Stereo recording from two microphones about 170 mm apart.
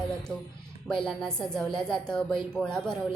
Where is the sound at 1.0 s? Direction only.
5° left (ahead or behind).